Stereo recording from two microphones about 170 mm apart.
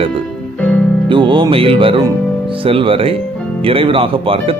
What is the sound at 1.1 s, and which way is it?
A man's voice, 30° right (ahead or behind).